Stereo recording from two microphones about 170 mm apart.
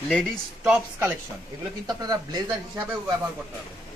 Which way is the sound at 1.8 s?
25° right (ahead or behind).